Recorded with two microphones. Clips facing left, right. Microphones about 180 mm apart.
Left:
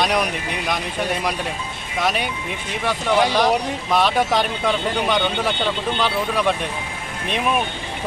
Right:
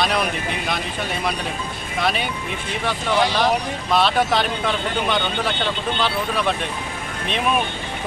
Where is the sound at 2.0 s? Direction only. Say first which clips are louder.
Left 1 dB; 10° left (ahead or behind).